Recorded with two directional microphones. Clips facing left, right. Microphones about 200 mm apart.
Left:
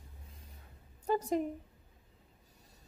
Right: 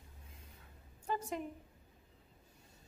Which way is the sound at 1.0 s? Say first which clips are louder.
Left 8 dB; 35° left (ahead or behind).